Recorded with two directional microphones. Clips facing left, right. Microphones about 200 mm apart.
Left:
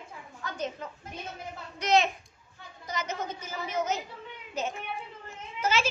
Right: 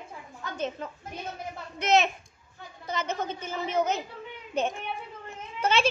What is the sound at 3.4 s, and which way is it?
Speech, 55° right (ahead or behind).